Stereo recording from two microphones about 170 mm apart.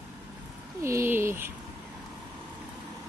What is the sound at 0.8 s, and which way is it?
Speech, 15° right (ahead or behind).